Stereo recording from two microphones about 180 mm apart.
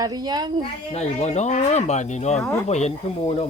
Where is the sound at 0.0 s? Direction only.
20° right (ahead or behind).